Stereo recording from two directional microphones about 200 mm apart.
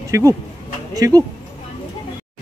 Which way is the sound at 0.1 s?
15° right (ahead or behind).